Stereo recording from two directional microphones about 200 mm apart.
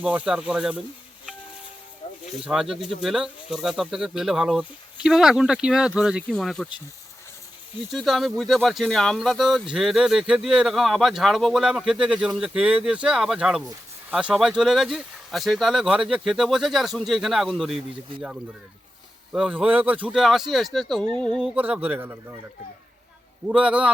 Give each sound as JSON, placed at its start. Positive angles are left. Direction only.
{"t": 0.0, "sound": "speech", "side_deg": -5}
{"t": 2.5, "sound": "speech", "side_deg": 0}
{"t": 7.9, "sound": "speech", "side_deg": 0}
{"t": 19.3, "sound": "speech", "side_deg": -5}
{"t": 23.5, "sound": "speech", "side_deg": -5}